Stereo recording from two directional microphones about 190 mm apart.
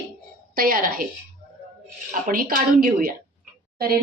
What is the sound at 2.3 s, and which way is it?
A woman's voice, 45° right (ahead or behind).